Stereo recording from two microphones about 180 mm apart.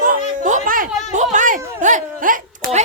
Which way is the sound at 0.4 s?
45° right (ahead or behind).